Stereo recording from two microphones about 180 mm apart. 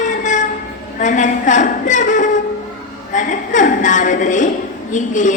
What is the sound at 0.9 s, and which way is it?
A woman's voice, 45° left (ahead or behind).